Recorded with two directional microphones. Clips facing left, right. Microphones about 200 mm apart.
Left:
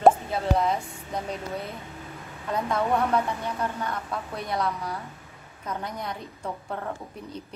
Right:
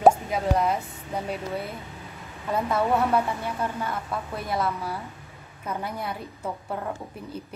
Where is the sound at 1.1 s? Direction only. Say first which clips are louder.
Right 2 dB; 5° right (ahead or behind).